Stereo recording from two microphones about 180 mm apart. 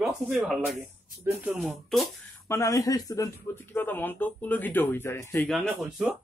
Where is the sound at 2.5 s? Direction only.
20° left (ahead or behind).